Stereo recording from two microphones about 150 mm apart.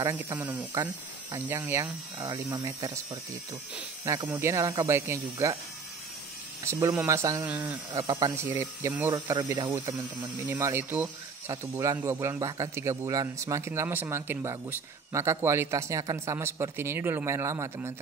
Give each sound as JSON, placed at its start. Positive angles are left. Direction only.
{"t": 0.0, "sound": "speech", "side_deg": -20}
{"t": 6.6, "sound": "speech", "side_deg": -20}